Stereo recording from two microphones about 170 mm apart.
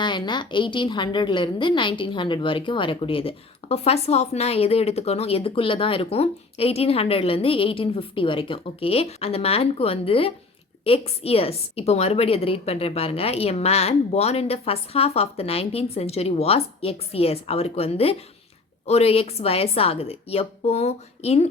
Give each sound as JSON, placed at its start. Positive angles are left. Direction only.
{"t": 0.0, "sound": "a woman's voice", "side_deg": 25}